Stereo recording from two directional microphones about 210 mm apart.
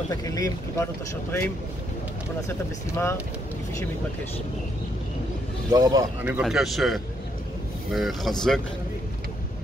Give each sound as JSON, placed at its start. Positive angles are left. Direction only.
{"t": 0.1, "sound": "speech", "side_deg": 15}
{"t": 2.4, "sound": "speech", "side_deg": 10}
{"t": 5.7, "sound": "speech", "side_deg": -20}